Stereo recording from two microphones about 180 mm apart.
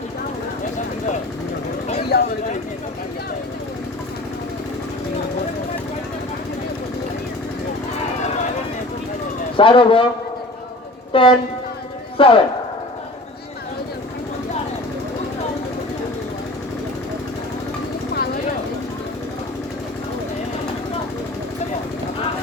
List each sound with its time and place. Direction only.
2.1 s a sound: 60° left (ahead or behind)
9.6 s a man's voice: 30° left (ahead or behind)
11.1 s speech: 30° left (ahead or behind)